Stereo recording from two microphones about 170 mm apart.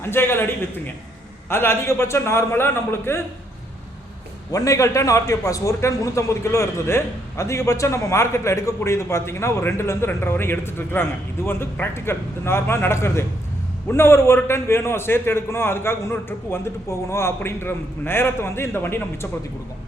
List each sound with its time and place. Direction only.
0.0 s a man's voice: 15° left (ahead or behind)
4.5 s a man's voice: 20° left (ahead or behind)